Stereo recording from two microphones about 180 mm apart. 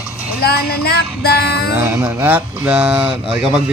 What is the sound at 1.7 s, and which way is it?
Speech, 15° right (ahead or behind).